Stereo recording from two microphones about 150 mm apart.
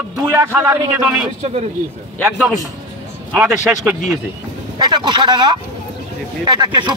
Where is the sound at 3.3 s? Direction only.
10° right (ahead or behind).